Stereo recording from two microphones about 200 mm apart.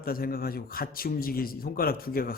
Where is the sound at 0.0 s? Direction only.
45° left (ahead or behind).